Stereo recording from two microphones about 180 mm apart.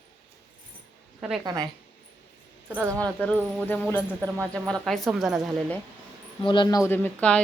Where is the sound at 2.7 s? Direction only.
15° right (ahead or behind).